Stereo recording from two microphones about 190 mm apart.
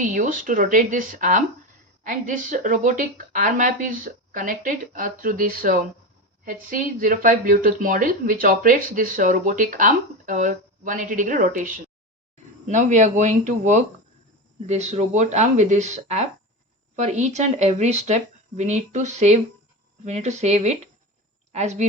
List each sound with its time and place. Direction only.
0.0 s a woman's voice: 45° right (ahead or behind)